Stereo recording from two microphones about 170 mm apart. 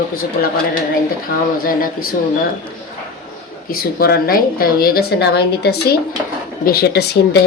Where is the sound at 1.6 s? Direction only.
55° left (ahead or behind).